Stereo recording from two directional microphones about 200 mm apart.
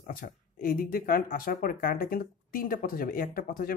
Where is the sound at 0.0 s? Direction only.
45° left (ahead or behind).